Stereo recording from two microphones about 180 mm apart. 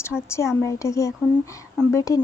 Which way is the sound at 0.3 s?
15° left (ahead or behind).